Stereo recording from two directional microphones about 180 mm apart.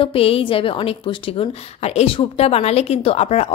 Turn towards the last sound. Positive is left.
turn(degrees=35)  # may be behind; listen again after turning